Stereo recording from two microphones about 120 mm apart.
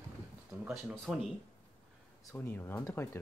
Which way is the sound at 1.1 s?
5° right (ahead or behind).